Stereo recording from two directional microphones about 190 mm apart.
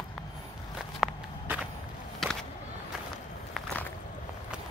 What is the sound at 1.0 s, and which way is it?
Walk, centre (ahead or behind).